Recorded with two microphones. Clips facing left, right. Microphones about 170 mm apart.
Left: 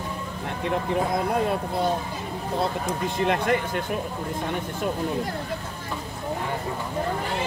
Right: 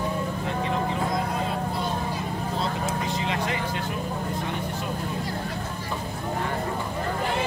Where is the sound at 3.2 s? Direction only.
55° left (ahead or behind).